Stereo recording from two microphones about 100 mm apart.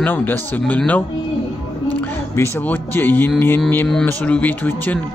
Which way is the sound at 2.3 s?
25° left (ahead or behind).